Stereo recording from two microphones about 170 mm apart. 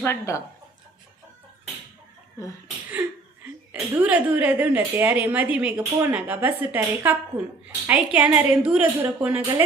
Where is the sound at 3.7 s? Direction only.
10° right (ahead or behind).